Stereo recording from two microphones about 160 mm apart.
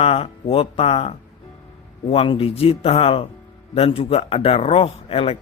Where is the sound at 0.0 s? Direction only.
40° left (ahead or behind).